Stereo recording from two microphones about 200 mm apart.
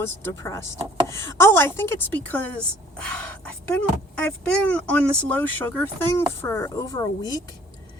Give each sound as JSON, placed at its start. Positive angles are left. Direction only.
{"t": 0.0, "sound": "speech", "side_deg": 15}